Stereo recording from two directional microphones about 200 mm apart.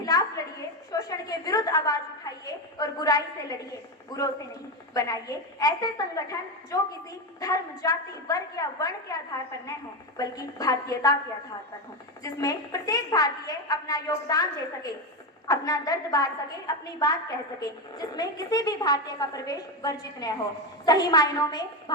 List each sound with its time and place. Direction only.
0.0 s a sound: 20° left (ahead or behind)
2.5 s a woman's voice: 20° left (ahead or behind)
7.3 s a woman's voice: 15° left (ahead or behind)
12.2 s a woman's voice: 15° left (ahead or behind)
15.4 s a woman's voice: 20° left (ahead or behind)